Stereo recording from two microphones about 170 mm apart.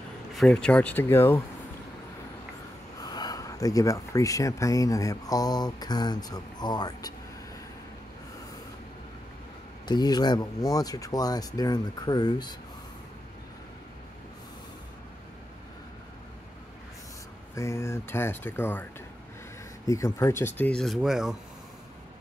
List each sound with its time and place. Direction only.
0.3 s speech: centre (ahead or behind)
3.0 s speech: 25° left (ahead or behind)
9.8 s speech: 25° left (ahead or behind)
17.6 s speech: 15° left (ahead or behind); by 21.4 s centre (ahead or behind)